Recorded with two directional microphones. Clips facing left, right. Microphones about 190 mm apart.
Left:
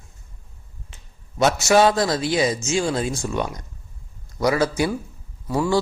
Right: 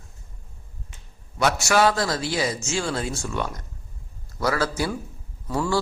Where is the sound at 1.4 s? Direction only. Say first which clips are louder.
Left 4 dB; 20° left (ahead or behind).